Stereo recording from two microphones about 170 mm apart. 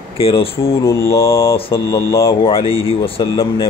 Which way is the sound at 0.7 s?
15° left (ahead or behind).